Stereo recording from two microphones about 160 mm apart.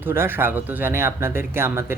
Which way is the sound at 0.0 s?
15° right (ahead or behind).